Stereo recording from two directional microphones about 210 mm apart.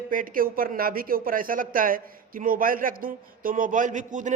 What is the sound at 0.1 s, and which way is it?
Speech, 40° right (ahead or behind).